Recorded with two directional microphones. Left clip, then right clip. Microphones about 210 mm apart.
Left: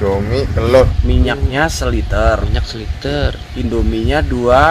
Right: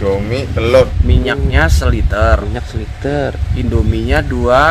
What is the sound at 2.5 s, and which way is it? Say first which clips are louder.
Speech: even; 30° right (ahead or behind).